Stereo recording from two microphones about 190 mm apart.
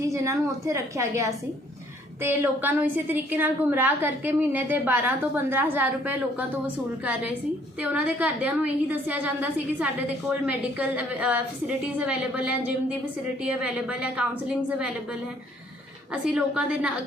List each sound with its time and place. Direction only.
0.0 s a woman's voice: 15° right (ahead or behind)
16.2 s a woman's voice: 5° right (ahead or behind)